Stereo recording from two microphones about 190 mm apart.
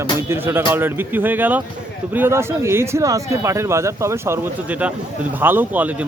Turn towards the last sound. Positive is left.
turn(degrees=-10)  # may be behind; listen again after turning